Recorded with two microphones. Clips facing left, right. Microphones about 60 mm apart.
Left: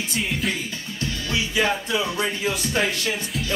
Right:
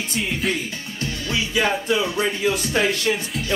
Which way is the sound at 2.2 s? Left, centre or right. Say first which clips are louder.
Right 3 dB; right.